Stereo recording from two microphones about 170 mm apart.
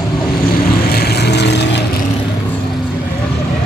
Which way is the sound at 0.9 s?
70° left (ahead or behind).